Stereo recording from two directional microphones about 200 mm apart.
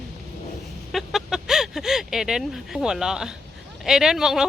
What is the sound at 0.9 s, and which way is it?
Speech, centre (ahead or behind).